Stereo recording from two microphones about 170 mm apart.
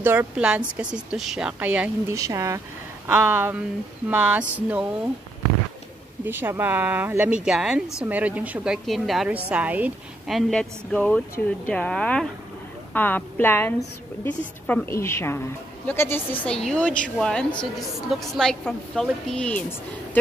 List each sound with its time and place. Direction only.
0.0 s a woman's voice: 10° right (ahead or behind)
6.2 s a woman's voice: 10° right (ahead or behind); by 19.6 s 5° left (ahead or behind)